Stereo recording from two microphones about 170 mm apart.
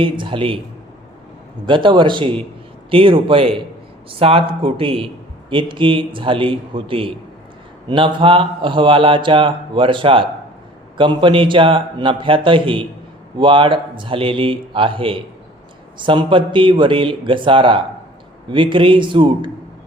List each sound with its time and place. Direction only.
0.0 s a man's voice: 30° right (ahead or behind)
1.6 s a man's voice: 30° right (ahead or behind)